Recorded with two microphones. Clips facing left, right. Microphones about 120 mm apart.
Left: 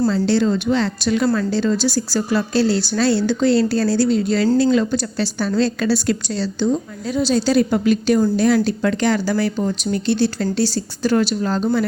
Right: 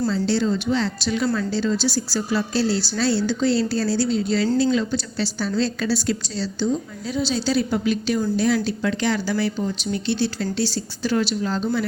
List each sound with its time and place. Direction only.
0.1 s a woman's voice: 60° left (ahead or behind)
7.2 s speech: 45° left (ahead or behind)